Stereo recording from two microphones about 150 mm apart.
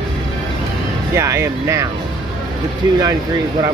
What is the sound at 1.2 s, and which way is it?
Speech, 20° right (ahead or behind).